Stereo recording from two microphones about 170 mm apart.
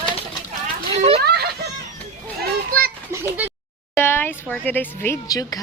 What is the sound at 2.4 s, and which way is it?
Children playing, 60° right (ahead or behind).